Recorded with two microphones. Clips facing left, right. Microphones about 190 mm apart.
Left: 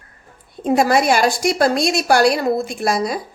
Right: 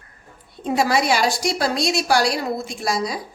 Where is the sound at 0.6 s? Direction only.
50° left (ahead or behind).